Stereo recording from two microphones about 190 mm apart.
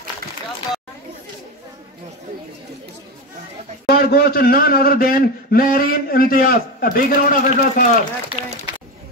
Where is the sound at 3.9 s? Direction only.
55° left (ahead or behind).